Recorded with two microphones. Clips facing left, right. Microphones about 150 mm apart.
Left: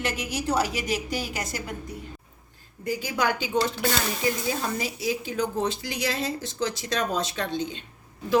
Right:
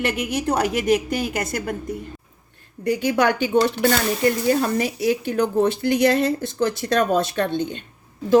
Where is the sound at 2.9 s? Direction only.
65° right (ahead or behind).